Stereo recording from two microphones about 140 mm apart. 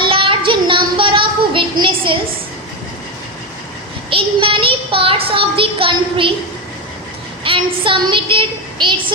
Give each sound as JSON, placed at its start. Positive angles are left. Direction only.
{"t": 0.0, "sound": "child singing", "side_deg": -40}
{"t": 4.1, "sound": "a child's voice", "side_deg": -40}
{"t": 7.4, "sound": "a child's voice", "side_deg": -40}